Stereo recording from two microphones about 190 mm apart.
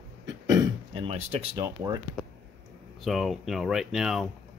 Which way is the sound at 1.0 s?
30° right (ahead or behind).